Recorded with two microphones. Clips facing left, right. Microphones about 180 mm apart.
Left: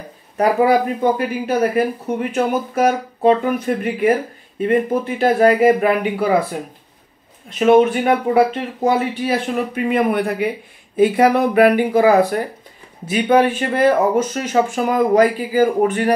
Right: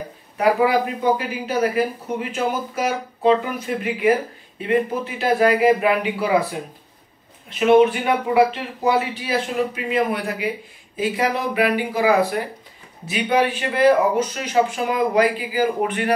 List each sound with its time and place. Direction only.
0.4 s speech: 45° left (ahead or behind)
2.1 s speech: 55° left (ahead or behind)
7.4 s speech: 45° left (ahead or behind)